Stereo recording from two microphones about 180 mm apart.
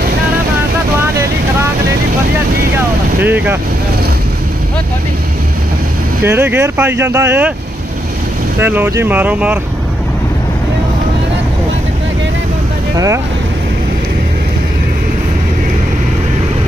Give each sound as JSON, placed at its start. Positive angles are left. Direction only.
{"t": 1.1, "sound": "boat", "side_deg": -15}
{"t": 3.2, "sound": "speech", "side_deg": -10}
{"t": 6.2, "sound": "speech", "side_deg": -10}
{"t": 8.5, "sound": "speech", "side_deg": -10}
{"t": 12.9, "sound": "speech", "side_deg": -20}